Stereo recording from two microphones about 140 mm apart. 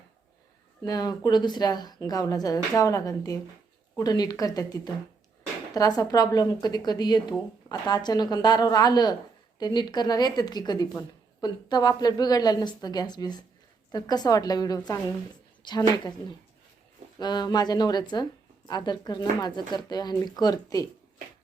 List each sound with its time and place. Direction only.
0.9 s a woman's voice: 25° left (ahead or behind)
17.2 s a woman's voice: 30° left (ahead or behind)